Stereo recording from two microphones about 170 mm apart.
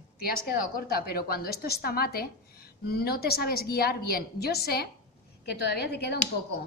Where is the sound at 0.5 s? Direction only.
65° left (ahead or behind).